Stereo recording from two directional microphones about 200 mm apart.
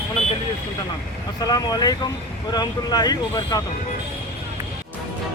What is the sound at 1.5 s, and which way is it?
Speech, 20° left (ahead or behind).